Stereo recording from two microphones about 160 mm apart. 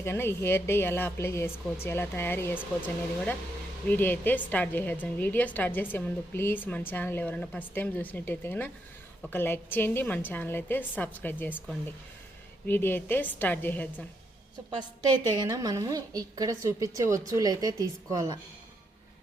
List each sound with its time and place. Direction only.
0.0 s a woman's voice: 15° left (ahead or behind)
12.6 s a woman's voice: 15° left (ahead or behind)
14.8 s a woman's voice: 25° right (ahead or behind)